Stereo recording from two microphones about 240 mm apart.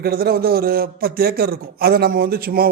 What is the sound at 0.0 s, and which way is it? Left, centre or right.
Speech, right.